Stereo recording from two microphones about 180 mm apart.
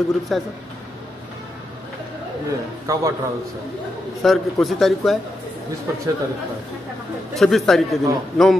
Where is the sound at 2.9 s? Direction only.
15° right (ahead or behind).